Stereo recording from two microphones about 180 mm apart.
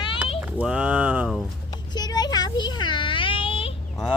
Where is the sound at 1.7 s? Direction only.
20° left (ahead or behind).